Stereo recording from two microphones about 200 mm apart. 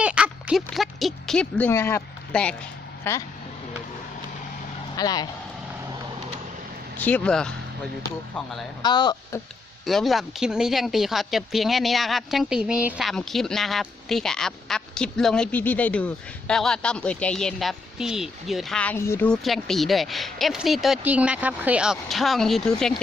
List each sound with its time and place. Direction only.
0.0 s speech: 5° right (ahead or behind); by 3.2 s 15° left (ahead or behind)
4.9 s speech: 20° left (ahead or behind)
6.9 s speech: 10° left (ahead or behind)
8.8 s speech: 20° left (ahead or behind)
9.8 s speech: centre (ahead or behind)